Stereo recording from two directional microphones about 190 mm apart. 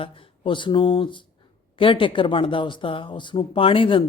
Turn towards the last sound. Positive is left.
turn(degrees=30)  # may be behind; listen again after turning